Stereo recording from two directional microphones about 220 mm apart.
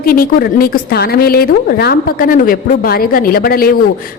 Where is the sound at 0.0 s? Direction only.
40° left (ahead or behind).